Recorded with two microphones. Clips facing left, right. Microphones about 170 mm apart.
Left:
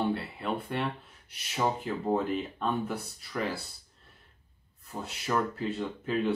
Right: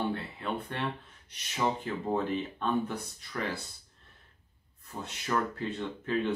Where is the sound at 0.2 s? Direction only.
10° left (ahead or behind).